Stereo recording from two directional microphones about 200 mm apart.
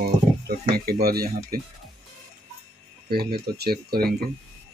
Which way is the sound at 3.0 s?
50° right (ahead or behind).